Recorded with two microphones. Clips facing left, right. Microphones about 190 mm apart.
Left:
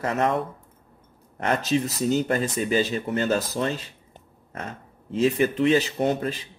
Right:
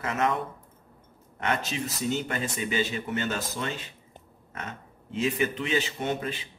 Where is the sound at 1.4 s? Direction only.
40° left (ahead or behind).